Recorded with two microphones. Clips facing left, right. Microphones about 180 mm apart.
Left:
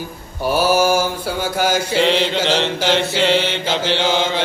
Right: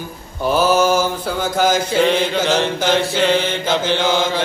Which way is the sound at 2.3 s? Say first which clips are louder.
Right 1 dB; 25° left (ahead or behind).